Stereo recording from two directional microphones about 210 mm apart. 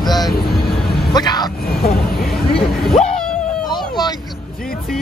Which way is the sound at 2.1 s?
Centre (ahead or behind).